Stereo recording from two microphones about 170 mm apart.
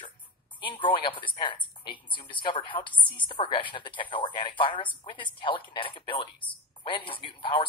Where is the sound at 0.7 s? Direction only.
30° left (ahead or behind).